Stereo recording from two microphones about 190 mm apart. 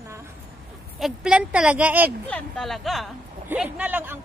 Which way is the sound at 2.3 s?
Centre (ahead or behind).